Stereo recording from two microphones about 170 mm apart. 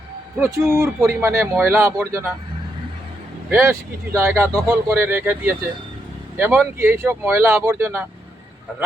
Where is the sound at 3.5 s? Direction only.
15° right (ahead or behind).